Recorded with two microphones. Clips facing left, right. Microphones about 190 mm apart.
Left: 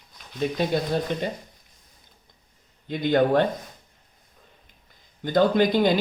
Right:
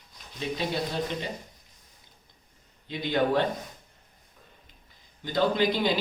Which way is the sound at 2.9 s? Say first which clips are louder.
Left 5 dB; 50° left (ahead or behind).